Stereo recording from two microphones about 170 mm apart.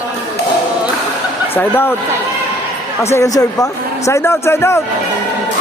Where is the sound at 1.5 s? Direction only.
10° left (ahead or behind).